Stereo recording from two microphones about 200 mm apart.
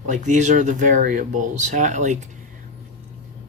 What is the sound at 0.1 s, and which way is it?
Speech, 35° right (ahead or behind).